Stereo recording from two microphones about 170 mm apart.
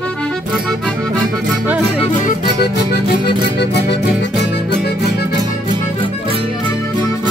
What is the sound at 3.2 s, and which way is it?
Music, 80° left.